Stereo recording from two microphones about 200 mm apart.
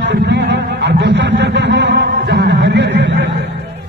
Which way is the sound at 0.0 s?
60° right (ahead or behind).